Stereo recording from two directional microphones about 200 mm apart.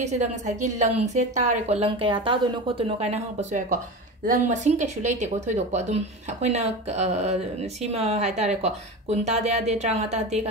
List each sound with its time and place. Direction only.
0.0 s a woman's voice: 35° right (ahead or behind)